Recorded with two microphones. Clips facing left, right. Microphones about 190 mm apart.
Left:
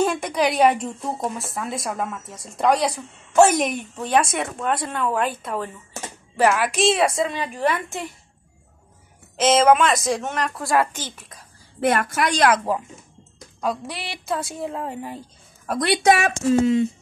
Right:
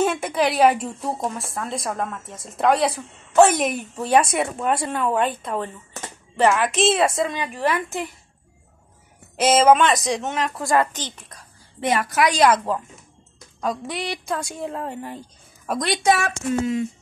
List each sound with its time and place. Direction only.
0.0 s a woman's voice: 5° right (ahead or behind)
9.4 s speech: centre (ahead or behind)
13.6 s a woman's voice: centre (ahead or behind)
16.4 s speech: 30° left (ahead or behind)